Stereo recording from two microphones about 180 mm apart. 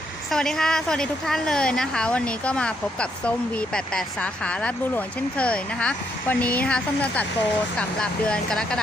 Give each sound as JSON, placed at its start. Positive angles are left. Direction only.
{"t": 0.3, "sound": "a woman's voice", "side_deg": 0}